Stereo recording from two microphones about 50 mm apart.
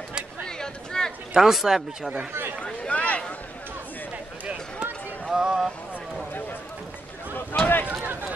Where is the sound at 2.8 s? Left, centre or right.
Left.